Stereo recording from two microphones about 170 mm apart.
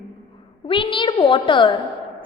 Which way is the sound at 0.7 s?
30° left (ahead or behind).